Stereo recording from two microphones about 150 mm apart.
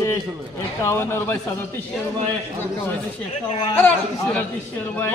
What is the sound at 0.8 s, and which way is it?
Speech, 15° left (ahead or behind).